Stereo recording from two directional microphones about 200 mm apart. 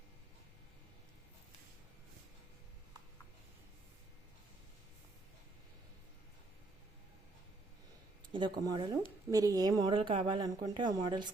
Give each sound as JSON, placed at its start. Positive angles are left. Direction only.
{"t": 8.3, "sound": "speech", "side_deg": -25}